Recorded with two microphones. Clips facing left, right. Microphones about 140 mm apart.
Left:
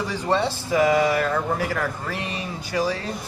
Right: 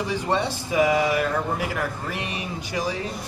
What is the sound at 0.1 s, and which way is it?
Speech, 15° right (ahead or behind).